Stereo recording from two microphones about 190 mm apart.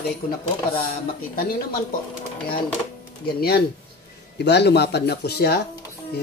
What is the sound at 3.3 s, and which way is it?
Speech, 55° left (ahead or behind).